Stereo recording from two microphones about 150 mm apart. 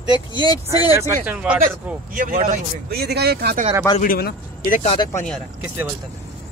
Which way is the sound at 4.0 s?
80° left.